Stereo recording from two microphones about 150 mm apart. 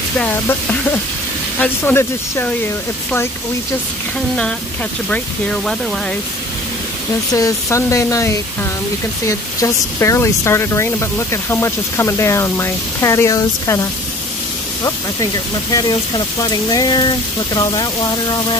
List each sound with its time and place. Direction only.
0.2 s speech: 15° left (ahead or behind)
5.1 s speech: 5° left (ahead or behind)
7.3 s speech: 20° left (ahead or behind)